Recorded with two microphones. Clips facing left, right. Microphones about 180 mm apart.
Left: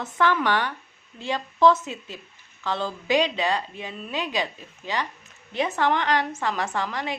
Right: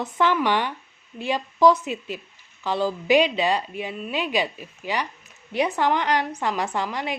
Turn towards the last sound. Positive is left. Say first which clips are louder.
# right 1 dB
turn(degrees=-15)  # may be behind; listen again after turning